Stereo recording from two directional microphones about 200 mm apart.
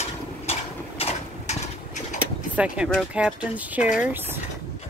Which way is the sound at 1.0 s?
30° left (ahead or behind).